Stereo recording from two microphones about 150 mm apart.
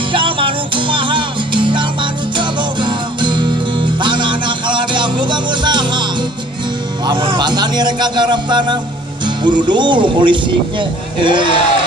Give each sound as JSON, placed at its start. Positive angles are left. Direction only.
{"t": 0.1, "sound": "music", "side_deg": -35}
{"t": 7.1, "sound": "a sound", "side_deg": -30}
{"t": 9.7, "sound": "speech", "side_deg": -30}